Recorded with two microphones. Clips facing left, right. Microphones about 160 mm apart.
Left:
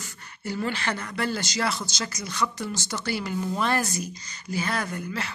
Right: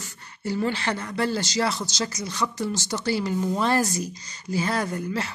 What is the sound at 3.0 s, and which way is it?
Speech, 35° right (ahead or behind).